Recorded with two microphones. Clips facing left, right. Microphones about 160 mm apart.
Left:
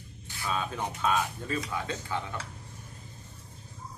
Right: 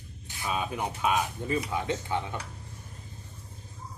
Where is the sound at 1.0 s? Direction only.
15° right (ahead or behind).